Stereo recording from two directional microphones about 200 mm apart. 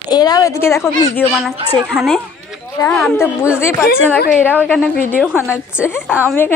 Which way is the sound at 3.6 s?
10° left (ahead or behind).